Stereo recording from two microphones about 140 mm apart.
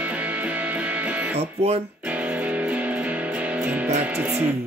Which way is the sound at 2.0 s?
10° right (ahead or behind).